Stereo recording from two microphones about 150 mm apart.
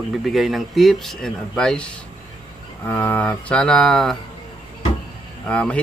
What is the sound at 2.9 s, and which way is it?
Music, 15° left (ahead or behind).